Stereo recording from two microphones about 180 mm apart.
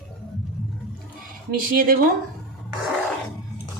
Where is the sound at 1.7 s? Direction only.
55° right (ahead or behind).